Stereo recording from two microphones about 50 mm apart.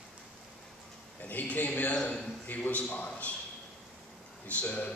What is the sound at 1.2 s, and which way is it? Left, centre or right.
A man's voice, left.